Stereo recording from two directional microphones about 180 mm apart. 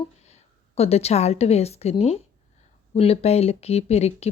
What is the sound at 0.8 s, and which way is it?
Speech, 35° left (ahead or behind).